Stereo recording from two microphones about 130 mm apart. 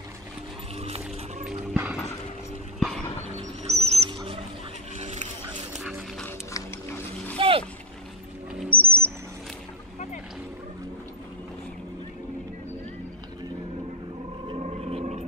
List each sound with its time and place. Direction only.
0.7 s music: 50° right (ahead or behind)
1.7 s a sound: 10° right (ahead or behind)
3.6 s bird: 55° right (ahead or behind)
4.1 s a sound: 40° right (ahead or behind)
4.9 s vehicle: 60° right (ahead or behind)
5.8 s music: centre (ahead or behind)
7.3 s boat: 45° right (ahead or behind)
8.6 s bird: 45° right (ahead or behind)
14.5 s a sound: 50° right (ahead or behind)